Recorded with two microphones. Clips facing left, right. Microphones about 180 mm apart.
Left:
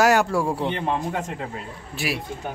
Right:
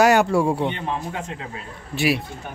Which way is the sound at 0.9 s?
50° left (ahead or behind).